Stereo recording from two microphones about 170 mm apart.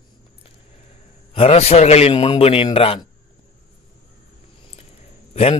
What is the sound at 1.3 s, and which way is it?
Speech, 35° left (ahead or behind).